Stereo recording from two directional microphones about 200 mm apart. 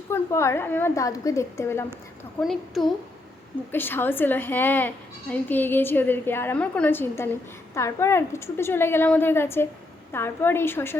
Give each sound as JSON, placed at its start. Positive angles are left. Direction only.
{"t": 0.1, "sound": "a woman's voice", "side_deg": 15}
{"t": 2.4, "sound": "a woman's voice", "side_deg": 0}
{"t": 3.7, "sound": "a woman's voice", "side_deg": 10}